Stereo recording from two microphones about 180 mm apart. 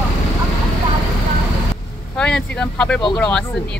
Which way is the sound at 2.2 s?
5° left (ahead or behind).